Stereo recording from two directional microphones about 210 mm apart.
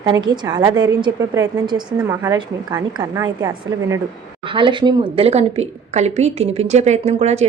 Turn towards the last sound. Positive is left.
turn(degrees=-30)  # may be behind; listen again after turning